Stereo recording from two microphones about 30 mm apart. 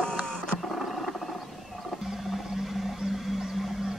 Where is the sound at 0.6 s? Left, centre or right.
Centre.